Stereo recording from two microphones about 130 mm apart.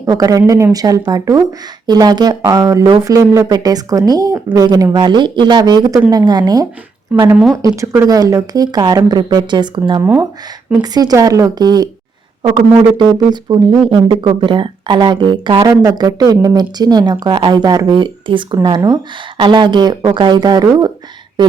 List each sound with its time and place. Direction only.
0.0 s speech: 25° right (ahead or behind)
10.0 s speech: 20° right (ahead or behind)
10.8 s speech: 30° right (ahead or behind)